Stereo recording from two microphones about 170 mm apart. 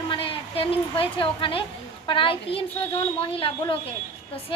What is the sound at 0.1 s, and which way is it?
A woman's voice, 30° left (ahead or behind).